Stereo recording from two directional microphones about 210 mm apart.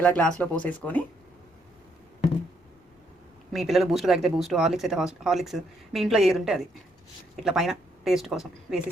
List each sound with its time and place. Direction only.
0.0 s speech: 5° left (ahead or behind)
3.5 s speech: centre (ahead or behind)